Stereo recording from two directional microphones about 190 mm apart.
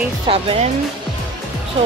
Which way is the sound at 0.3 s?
30° right (ahead or behind).